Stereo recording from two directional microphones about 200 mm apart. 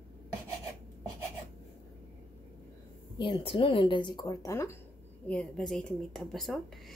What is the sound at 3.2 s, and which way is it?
Speech, 25° left (ahead or behind).